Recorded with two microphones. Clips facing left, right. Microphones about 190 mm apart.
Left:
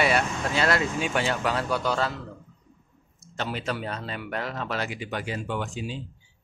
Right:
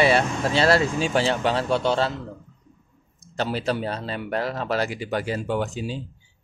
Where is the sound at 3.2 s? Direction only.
35° right (ahead or behind).